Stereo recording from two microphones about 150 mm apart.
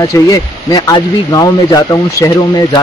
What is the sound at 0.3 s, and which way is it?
Speech, 25° left (ahead or behind).